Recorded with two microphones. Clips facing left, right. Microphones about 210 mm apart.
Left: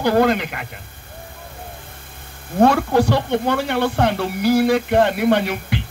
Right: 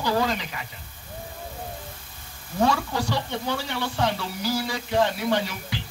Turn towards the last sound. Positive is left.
turn(degrees=60)  # may be behind; listen again after turning